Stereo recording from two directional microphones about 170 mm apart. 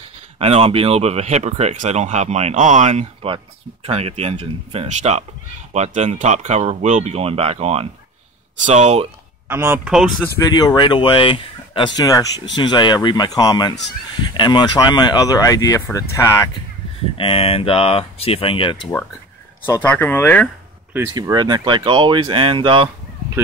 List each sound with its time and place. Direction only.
0.4 s speech: 40° right (ahead or behind)
9.5 s speech: 10° right (ahead or behind)
10.4 s speech: 25° left (ahead or behind)
17.2 s speech: 35° left (ahead or behind)
19.6 s speech: 10° left (ahead or behind)
21.1 s speech: 25° right (ahead or behind)